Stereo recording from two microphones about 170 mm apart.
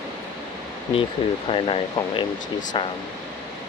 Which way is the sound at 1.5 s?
30° left (ahead or behind).